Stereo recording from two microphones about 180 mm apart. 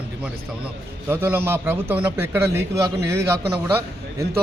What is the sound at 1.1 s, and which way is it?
A man's voice, 10° right (ahead or behind).